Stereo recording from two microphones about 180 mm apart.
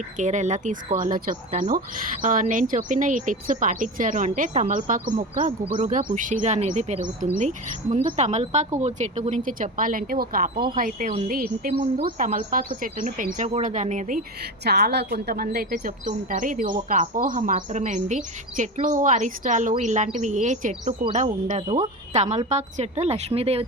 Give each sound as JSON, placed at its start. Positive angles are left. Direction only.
{"t": 0.2, "sound": "speech", "side_deg": -40}
{"t": 14.6, "sound": "a woman's voice", "side_deg": -65}
{"t": 15.7, "sound": "speech", "side_deg": -45}